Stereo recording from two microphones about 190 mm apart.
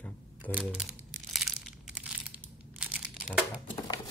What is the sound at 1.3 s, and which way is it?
Crumpling, centre (ahead or behind).